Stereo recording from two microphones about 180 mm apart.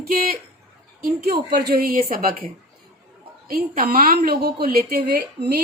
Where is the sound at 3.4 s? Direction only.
55° right (ahead or behind).